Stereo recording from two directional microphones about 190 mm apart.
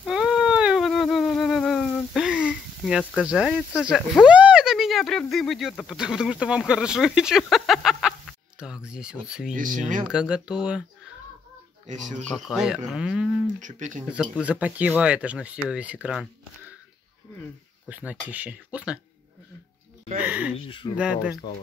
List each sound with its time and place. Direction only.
0.0 s a sound: 5° right (ahead or behind)
9.5 s speech: 45° right (ahead or behind)
10.0 s speech: 5° right (ahead or behind)
11.9 s speech: 40° right (ahead or behind)
12.3 s speech: centre (ahead or behind)
13.6 s speech: 40° right (ahead or behind)
14.1 s speech: centre (ahead or behind)
17.8 s speech: 5° right (ahead or behind)
20.2 s speech: 5° right (ahead or behind)
20.5 s speech: 30° left (ahead or behind)
21.0 s speech: 5° right (ahead or behind)